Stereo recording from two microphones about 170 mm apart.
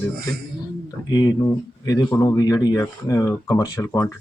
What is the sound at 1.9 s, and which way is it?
Speech, 15° left (ahead or behind).